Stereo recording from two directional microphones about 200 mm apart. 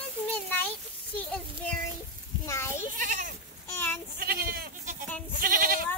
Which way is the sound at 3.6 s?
10° left (ahead or behind).